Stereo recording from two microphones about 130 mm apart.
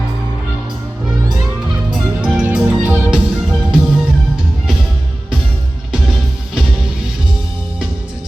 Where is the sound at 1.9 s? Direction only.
5° right (ahead or behind).